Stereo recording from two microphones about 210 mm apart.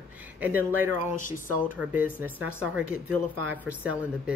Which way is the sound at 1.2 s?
40° left (ahead or behind).